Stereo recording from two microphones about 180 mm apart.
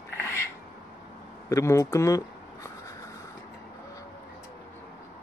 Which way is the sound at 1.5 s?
15° left (ahead or behind).